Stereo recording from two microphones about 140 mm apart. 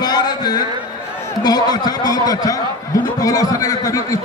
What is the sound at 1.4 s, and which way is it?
Speech, 30° left (ahead or behind).